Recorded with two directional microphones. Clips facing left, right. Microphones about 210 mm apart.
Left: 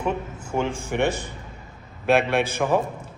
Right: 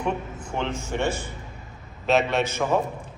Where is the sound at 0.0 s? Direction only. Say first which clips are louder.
Left 1 dB; 10° left (ahead or behind).